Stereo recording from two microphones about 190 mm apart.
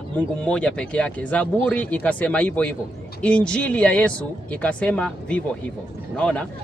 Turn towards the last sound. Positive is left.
turn(degrees=5)  # may be behind; listen again after turning